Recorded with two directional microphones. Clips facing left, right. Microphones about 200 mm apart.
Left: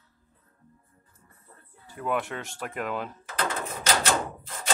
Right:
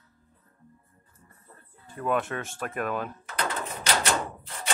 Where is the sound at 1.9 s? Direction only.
15° left (ahead or behind).